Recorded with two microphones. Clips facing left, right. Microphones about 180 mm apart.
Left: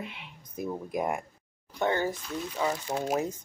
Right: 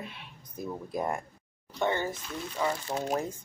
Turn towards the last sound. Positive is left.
turn(degrees=10)  # may be behind; listen again after turning